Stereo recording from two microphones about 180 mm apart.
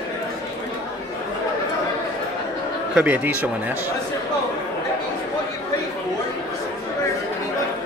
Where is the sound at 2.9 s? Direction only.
5° right (ahead or behind).